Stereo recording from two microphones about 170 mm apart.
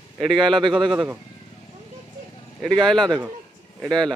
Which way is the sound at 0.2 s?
Centre (ahead or behind).